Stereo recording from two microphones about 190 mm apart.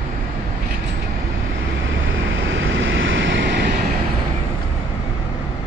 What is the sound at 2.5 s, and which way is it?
Vehicle, 90° right.